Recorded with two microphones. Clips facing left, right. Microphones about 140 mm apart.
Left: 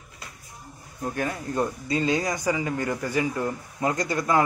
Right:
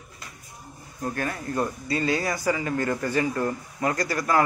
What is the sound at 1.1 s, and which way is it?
Speech, 15° left (ahead or behind).